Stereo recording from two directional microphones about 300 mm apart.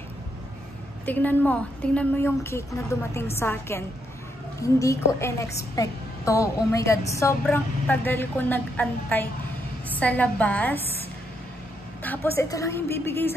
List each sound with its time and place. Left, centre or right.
1.0 s a woman's voice: centre
12.0 s a woman's voice: centre